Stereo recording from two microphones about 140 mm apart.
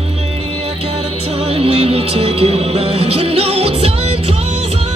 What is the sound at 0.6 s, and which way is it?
Music, 45° right (ahead or behind).